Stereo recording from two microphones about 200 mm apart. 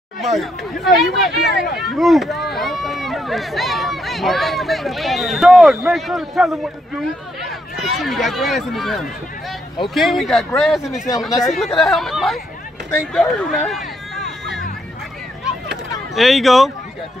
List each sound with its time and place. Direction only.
0.2 s speech: centre (ahead or behind)
7.7 s speech: centre (ahead or behind)
11.2 s speech: 15° left (ahead or behind)
11.5 s speech: centre (ahead or behind)
16.2 s speech: centre (ahead or behind)